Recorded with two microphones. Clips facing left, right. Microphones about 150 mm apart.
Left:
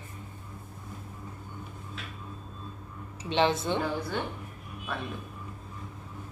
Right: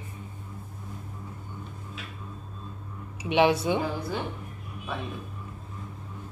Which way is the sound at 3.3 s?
10° right (ahead or behind).